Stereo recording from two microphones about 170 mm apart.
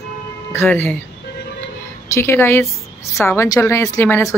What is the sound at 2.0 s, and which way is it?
Speech, 15° left (ahead or behind).